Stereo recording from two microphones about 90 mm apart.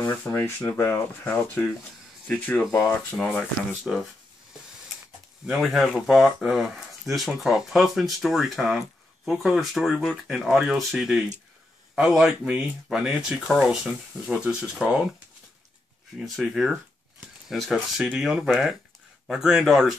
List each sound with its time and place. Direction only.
0.0 s speech: 25° left (ahead or behind)
3.2 s speech: 5° left (ahead or behind)
5.5 s speech: centre (ahead or behind)
16.3 s speech: centre (ahead or behind)